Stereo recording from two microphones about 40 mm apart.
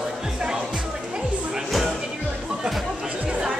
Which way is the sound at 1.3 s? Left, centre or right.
Right.